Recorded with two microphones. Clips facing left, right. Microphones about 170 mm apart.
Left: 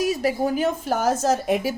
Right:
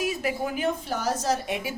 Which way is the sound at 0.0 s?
40° left (ahead or behind).